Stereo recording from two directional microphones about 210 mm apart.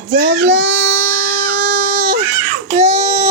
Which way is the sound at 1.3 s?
25° right (ahead or behind).